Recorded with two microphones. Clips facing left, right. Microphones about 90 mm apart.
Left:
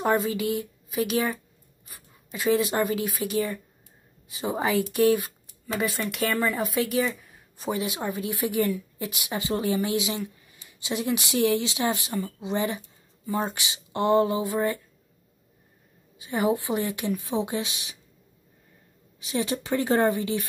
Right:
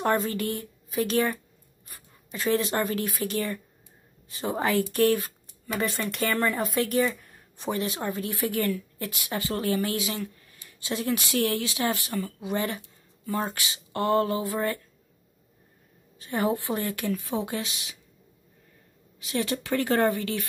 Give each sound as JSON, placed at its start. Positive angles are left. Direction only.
{"t": 0.0, "sound": "speech", "side_deg": 5}
{"t": 16.2, "sound": "speech", "side_deg": 15}
{"t": 19.1, "sound": "a woman's voice", "side_deg": 20}